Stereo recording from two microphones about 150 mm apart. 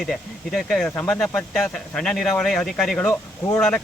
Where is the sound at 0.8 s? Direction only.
10° left (ahead or behind).